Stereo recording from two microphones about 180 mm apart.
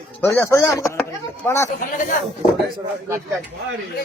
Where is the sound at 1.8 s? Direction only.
45° left (ahead or behind).